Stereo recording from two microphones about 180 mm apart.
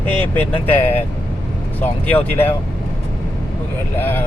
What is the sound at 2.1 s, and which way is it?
Speech, 10° left (ahead or behind).